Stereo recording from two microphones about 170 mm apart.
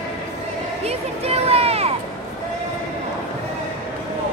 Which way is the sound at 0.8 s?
35° right (ahead or behind).